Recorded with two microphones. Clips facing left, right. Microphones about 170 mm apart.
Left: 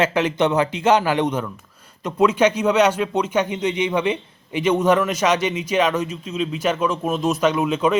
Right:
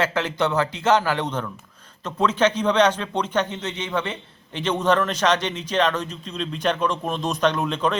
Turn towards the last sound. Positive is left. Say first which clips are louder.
# left 3 dB
turn(degrees=5)  # may be behind; listen again after turning